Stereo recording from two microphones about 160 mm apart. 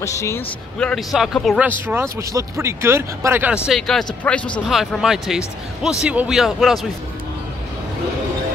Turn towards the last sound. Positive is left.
turn(degrees=0)  # may be behind; listen again after turning